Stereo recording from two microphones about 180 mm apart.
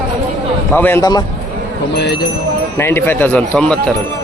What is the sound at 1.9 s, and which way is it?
Speech, 65° left (ahead or behind).